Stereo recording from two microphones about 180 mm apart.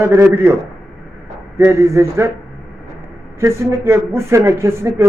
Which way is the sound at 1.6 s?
15° right (ahead or behind).